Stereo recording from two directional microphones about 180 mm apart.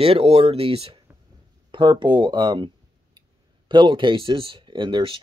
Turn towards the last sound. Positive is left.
turn(degrees=-30)  # may be behind; listen again after turning